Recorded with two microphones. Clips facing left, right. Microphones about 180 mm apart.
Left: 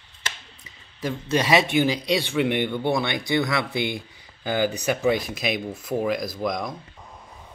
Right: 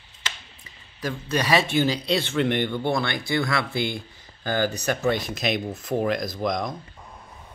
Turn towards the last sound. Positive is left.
turn(degrees=5)  # may be behind; listen again after turning